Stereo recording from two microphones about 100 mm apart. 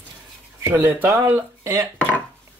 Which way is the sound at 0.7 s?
20° right (ahead or behind).